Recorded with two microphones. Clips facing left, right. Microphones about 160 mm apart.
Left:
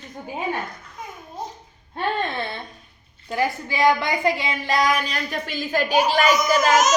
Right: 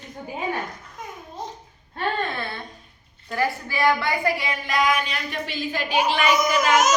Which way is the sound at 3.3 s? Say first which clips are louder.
Left 1 dB; 20° left (ahead or behind).